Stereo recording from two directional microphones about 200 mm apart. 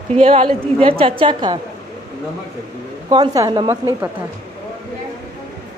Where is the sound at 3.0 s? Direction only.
20° right (ahead or behind).